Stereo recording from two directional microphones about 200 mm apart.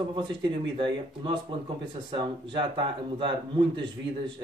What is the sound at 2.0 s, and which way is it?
A man's voice, 25° right (ahead or behind).